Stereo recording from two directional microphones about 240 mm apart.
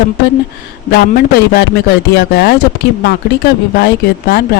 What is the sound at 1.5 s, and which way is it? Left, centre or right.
Speech, left.